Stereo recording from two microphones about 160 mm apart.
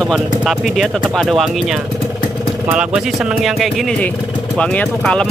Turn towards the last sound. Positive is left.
turn(degrees=5)  # may be behind; listen again after turning